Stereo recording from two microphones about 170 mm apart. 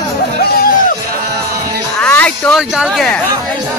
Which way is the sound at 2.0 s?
10° left (ahead or behind).